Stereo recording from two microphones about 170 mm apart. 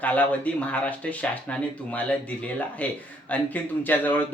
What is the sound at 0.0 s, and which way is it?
Speech, 10° left (ahead or behind).